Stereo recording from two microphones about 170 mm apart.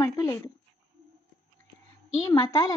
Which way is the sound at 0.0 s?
20° left (ahead or behind).